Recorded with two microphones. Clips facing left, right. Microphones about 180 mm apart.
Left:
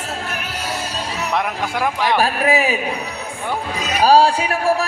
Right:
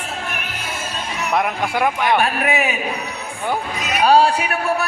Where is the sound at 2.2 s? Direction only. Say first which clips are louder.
Left 2 dB; 35° left (ahead or behind).